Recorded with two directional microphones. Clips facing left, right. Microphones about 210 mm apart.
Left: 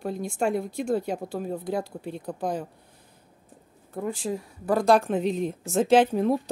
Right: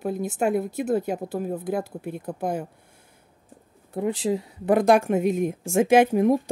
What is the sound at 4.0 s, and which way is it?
Speech, 20° right (ahead or behind).